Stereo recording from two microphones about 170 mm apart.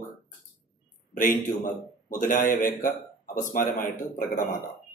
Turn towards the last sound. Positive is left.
turn(degrees=50)  # may be behind; listen again after turning